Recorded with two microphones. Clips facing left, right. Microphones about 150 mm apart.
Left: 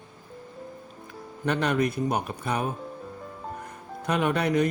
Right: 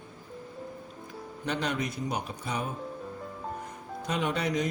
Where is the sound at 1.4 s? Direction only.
55° left (ahead or behind).